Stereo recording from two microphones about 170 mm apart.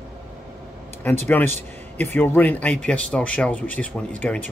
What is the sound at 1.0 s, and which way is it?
Speech, 10° left (ahead or behind).